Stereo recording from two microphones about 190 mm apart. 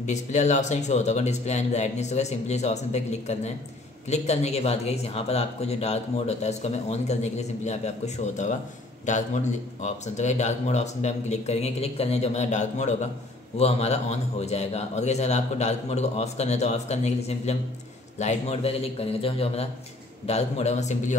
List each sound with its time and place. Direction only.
0.0 s speech: 40° left (ahead or behind)